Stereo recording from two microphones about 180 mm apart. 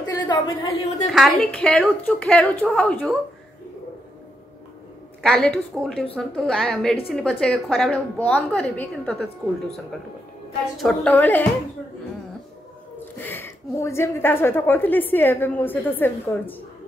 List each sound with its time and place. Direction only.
0.0 s a sound: 25° left (ahead or behind)
1.1 s a woman's voice: 5° left (ahead or behind)
5.2 s a woman's voice: 5° left (ahead or behind)
10.8 s a woman's voice: 5° left (ahead or behind)
13.2 s a woman's voice: 10° left (ahead or behind)